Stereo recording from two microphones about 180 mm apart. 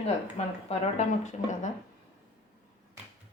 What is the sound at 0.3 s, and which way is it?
A woman's voice, 40° left (ahead or behind).